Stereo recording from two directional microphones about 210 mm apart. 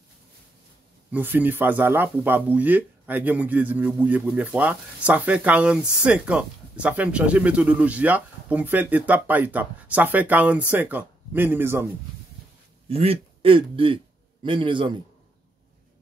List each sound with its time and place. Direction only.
1.1 s speech: 10° right (ahead or behind)
12.8 s a man's voice: 30° right (ahead or behind)